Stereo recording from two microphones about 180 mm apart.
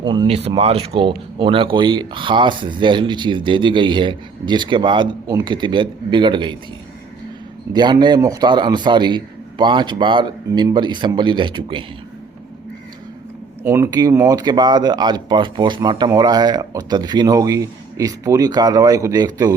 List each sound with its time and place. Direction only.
0.0 s speech: 30° right (ahead or behind)
7.7 s speech: 25° right (ahead or behind)
13.7 s speech: 15° right (ahead or behind)